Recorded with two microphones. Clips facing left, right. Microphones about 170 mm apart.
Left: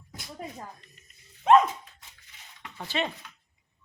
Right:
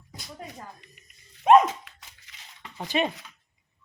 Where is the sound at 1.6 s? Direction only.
90° right.